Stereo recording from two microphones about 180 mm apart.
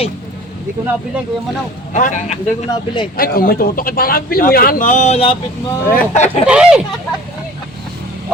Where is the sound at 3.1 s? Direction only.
55° left (ahead or behind).